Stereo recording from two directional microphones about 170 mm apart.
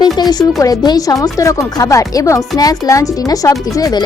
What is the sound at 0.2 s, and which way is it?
Speech, 25° left (ahead or behind).